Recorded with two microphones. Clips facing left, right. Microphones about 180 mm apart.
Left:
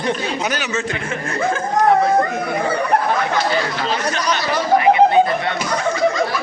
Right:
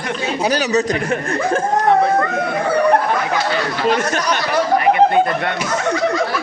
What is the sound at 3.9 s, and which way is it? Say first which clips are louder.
Speech: right 2 dB; 50° right (ahead or behind).